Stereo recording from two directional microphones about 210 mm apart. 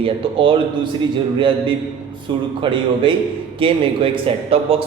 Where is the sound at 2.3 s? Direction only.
25° right (ahead or behind).